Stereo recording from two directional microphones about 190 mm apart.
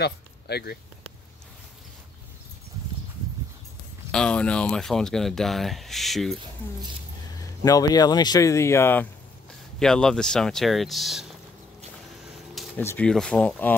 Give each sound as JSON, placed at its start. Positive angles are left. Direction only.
{"t": 0.0, "sound": "speech", "side_deg": 60}
{"t": 4.1, "sound": "speech", "side_deg": 5}
{"t": 7.3, "sound": "speech", "side_deg": 20}
{"t": 12.5, "sound": "speech", "side_deg": 10}